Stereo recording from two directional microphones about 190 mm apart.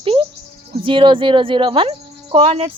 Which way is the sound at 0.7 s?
30° right (ahead or behind).